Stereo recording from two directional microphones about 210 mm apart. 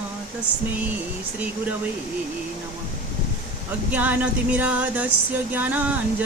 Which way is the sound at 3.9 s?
5° right (ahead or behind).